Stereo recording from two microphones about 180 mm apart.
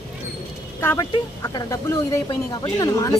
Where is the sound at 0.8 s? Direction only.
15° left (ahead or behind).